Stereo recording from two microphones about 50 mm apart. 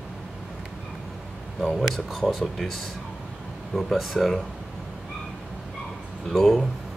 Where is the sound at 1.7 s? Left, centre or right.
Centre.